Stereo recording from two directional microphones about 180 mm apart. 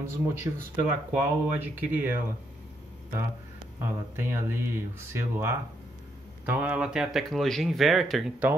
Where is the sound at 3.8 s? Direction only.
15° right (ahead or behind).